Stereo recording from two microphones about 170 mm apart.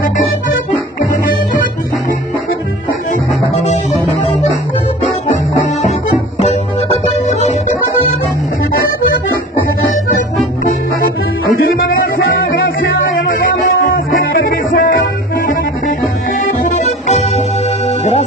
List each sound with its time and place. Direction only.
3.1 s music: 40° left (ahead or behind)
7.2 s music: 40° left (ahead or behind)
14.1 s music: 60° left (ahead or behind)
17.8 s music: 40° left (ahead or behind)